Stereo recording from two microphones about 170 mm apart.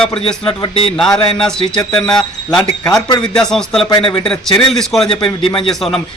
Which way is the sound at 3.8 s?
25° left (ahead or behind).